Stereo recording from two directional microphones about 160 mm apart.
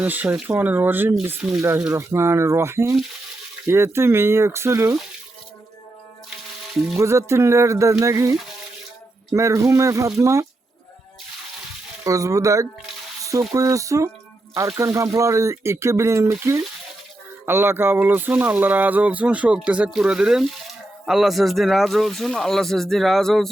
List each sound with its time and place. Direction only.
0.0 s speech: 10° right (ahead or behind)
1.9 s speech: 15° right (ahead or behind)
7.0 s speech: 15° right (ahead or behind)
9.3 s speech: 20° right (ahead or behind)
12.0 s speech: 20° right (ahead or behind)
17.4 s speech: 15° right (ahead or behind); by 23.5 s centre (ahead or behind)